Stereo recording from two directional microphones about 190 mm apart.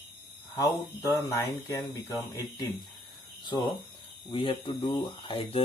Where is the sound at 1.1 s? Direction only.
15° left (ahead or behind).